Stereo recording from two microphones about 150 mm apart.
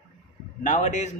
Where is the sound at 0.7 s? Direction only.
50° left (ahead or behind).